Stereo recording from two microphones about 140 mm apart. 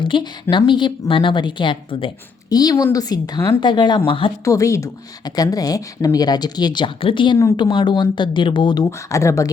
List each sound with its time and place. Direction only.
0.0 s a woman's voice: 35° left (ahead or behind)
2.5 s speech: 25° left (ahead or behind)
4.4 s speech: 20° left (ahead or behind)